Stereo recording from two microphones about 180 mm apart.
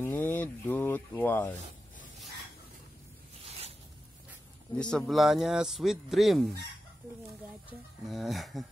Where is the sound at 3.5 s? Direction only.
35° right (ahead or behind).